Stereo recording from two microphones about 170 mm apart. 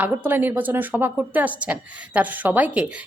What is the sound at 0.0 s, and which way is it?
A woman's voice, 10° right (ahead or behind).